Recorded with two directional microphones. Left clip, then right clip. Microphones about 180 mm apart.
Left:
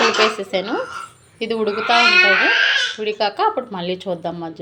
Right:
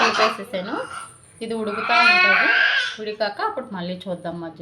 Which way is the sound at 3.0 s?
25° left (ahead or behind).